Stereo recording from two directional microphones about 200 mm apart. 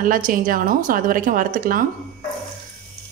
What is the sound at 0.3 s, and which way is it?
Speech, 45° right (ahead or behind).